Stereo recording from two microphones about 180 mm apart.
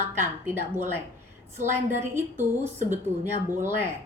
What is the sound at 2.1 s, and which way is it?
Speech, 10° right (ahead or behind).